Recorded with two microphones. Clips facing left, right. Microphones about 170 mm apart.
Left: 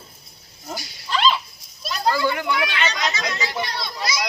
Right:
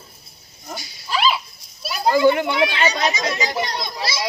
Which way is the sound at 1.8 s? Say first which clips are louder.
Right 6 dB; 10° right (ahead or behind).